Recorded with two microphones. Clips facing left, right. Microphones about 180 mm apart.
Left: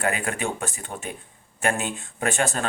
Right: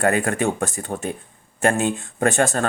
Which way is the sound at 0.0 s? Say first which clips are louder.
Right 7 dB; 50° right (ahead or behind).